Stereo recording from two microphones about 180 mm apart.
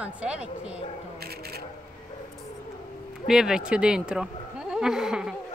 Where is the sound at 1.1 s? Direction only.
60° right (ahead or behind).